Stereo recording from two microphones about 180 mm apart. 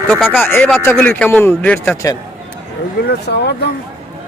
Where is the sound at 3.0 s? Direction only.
70° left (ahead or behind).